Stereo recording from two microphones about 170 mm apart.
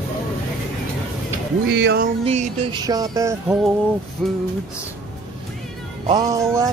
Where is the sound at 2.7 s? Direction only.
20° right (ahead or behind).